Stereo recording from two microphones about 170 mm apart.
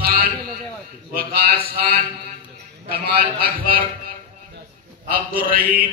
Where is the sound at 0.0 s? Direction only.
65° right (ahead or behind).